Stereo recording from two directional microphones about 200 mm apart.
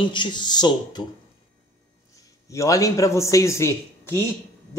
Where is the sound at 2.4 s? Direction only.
15° left (ahead or behind).